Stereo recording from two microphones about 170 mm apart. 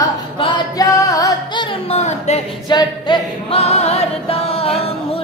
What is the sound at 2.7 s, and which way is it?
A capella, 25° left (ahead or behind).